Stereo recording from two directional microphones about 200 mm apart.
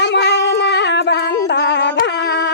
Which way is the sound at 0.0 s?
60° left (ahead or behind).